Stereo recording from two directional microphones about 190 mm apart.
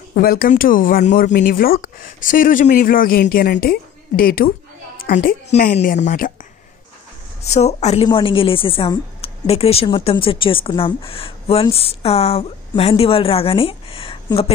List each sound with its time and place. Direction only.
0.1 s a woman's voice: 50° left (ahead or behind)
7.4 s a woman's voice: 35° left (ahead or behind)